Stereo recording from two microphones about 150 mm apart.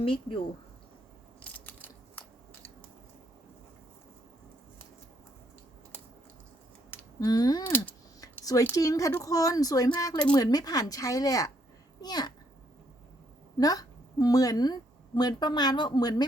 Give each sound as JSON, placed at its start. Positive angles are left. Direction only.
{"t": 0.0, "sound": "speech", "side_deg": 35}
{"t": 1.4, "sound": "scissors", "side_deg": 10}
{"t": 7.2, "sound": "a woman's voice", "side_deg": 25}
{"t": 8.2, "sound": "a sound", "side_deg": 25}
{"t": 8.7, "sound": "a woman's voice", "side_deg": 25}
{"t": 13.6, "sound": "a woman's voice", "side_deg": 25}